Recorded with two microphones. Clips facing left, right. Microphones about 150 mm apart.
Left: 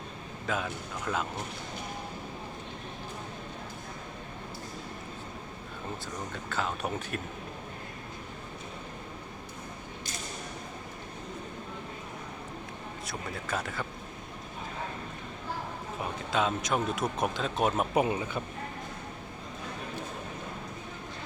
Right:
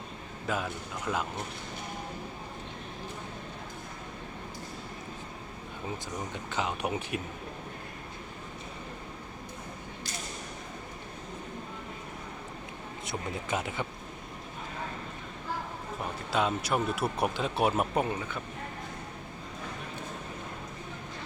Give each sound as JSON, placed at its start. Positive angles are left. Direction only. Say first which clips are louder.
{"t": 0.4, "sound": "speech", "louder": "even", "side_deg": -5}
{"t": 6.3, "sound": "speech", "louder": "even", "side_deg": -15}
{"t": 13.1, "sound": "speech", "louder": "right 3 dB", "side_deg": -20}
{"t": 16.3, "sound": "speech", "louder": "even", "side_deg": -5}
{"t": 17.9, "sound": "speech", "louder": "left 3 dB", "side_deg": 15}